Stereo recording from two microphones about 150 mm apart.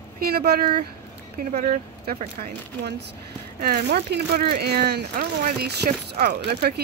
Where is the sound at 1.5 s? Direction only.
55° right (ahead or behind).